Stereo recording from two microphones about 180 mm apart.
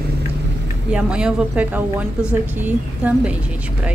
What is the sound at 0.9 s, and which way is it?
A woman's voice, 5° right (ahead or behind).